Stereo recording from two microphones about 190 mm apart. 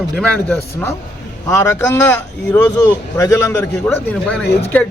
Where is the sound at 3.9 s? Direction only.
5° left (ahead or behind).